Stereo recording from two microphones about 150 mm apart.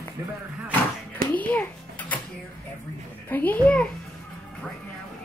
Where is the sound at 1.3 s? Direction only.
10° left (ahead or behind).